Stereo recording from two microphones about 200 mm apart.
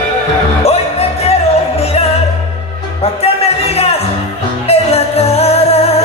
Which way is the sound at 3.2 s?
30° left (ahead or behind).